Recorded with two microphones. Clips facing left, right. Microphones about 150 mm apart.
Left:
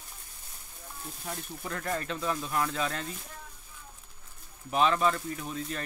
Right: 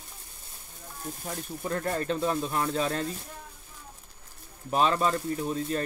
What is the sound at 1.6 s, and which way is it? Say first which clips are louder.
Speech: right 5 dB; 35° right (ahead or behind).